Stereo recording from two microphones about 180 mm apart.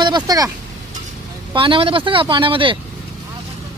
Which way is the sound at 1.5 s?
30° right (ahead or behind).